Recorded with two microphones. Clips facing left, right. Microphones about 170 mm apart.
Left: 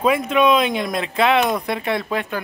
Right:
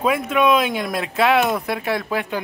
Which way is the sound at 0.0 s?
Centre (ahead or behind).